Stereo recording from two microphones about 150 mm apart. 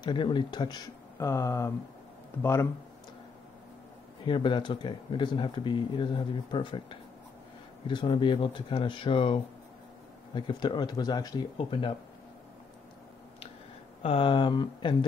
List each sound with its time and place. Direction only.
0.0 s speech: 30° left (ahead or behind)
4.2 s speech: 35° left (ahead or behind)
14.0 s speech: 35° left (ahead or behind)